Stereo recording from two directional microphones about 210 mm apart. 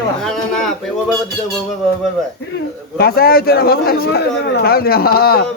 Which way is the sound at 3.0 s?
45° left (ahead or behind).